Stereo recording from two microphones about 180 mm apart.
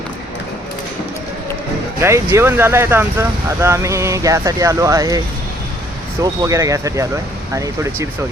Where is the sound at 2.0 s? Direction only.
15° right (ahead or behind).